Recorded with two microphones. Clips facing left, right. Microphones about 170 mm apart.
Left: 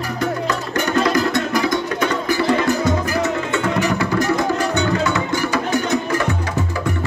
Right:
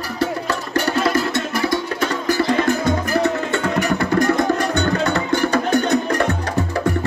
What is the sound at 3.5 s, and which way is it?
Music, 55° right (ahead or behind).